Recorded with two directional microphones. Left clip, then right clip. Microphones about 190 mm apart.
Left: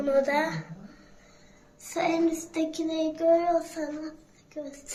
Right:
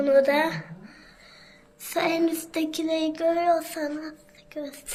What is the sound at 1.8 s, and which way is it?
Child singing, 35° right (ahead or behind).